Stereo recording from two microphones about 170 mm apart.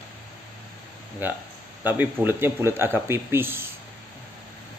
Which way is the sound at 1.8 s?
10° right (ahead or behind).